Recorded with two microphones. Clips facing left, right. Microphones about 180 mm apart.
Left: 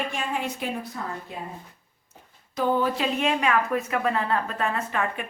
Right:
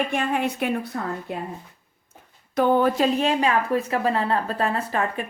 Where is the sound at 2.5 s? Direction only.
60° right (ahead or behind).